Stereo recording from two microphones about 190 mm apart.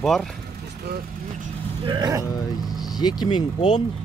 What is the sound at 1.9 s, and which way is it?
Speech, 20° right (ahead or behind).